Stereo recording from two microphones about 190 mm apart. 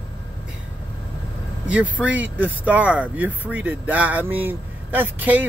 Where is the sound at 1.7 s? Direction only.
5° right (ahead or behind).